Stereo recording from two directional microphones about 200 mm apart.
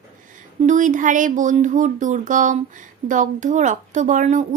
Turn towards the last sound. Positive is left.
turn(degrees=-40)  # may be behind; listen again after turning